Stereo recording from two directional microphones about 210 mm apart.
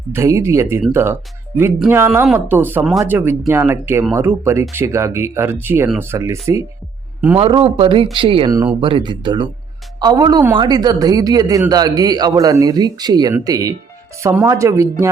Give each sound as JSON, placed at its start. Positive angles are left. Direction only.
{"t": 0.1, "sound": "a man's voice", "side_deg": -15}
{"t": 7.3, "sound": "a man's voice", "side_deg": -30}